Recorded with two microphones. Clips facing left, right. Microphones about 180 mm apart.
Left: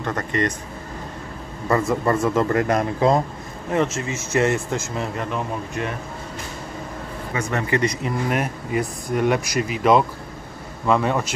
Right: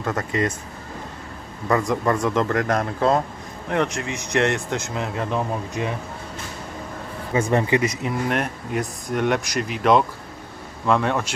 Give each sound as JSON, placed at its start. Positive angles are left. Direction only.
{"t": 0.0, "sound": "speech", "side_deg": -5}
{"t": 1.7, "sound": "speech", "side_deg": 5}
{"t": 7.5, "sound": "speech", "side_deg": -25}
{"t": 7.8, "sound": "speech", "side_deg": 0}